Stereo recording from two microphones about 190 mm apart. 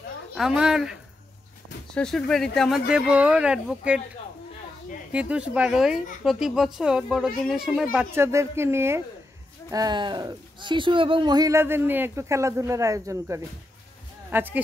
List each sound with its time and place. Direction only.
0.3 s a woman's voice: centre (ahead or behind)
5.1 s a woman's voice: 5° right (ahead or behind)